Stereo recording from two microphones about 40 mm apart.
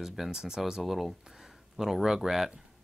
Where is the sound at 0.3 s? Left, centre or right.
Centre.